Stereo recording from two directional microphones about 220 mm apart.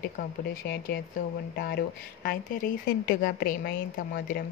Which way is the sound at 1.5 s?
45° left (ahead or behind).